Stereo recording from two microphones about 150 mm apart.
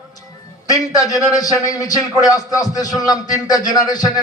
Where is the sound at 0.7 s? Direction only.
25° left (ahead or behind).